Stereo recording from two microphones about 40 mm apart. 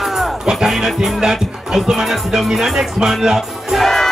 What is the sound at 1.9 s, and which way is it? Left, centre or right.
Speech, centre.